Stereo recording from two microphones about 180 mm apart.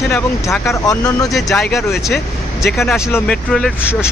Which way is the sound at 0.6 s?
20° left (ahead or behind).